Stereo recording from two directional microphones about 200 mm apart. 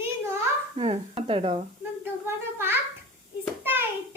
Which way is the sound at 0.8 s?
30° right (ahead or behind).